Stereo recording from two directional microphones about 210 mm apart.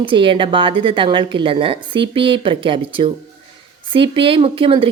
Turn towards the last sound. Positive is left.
turn(degrees=-25)  # may be behind; listen again after turning